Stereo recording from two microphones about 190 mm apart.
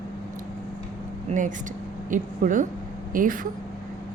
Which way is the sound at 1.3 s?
40° right (ahead or behind).